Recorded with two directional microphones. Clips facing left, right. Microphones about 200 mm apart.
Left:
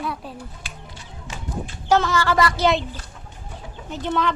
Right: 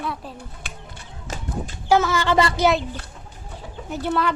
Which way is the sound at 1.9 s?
10° right (ahead or behind).